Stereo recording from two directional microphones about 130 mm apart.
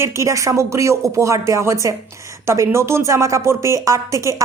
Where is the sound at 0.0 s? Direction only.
20° right (ahead or behind).